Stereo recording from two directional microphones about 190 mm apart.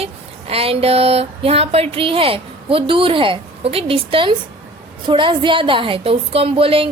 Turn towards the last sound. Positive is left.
turn(degrees=-30)  # may be behind; listen again after turning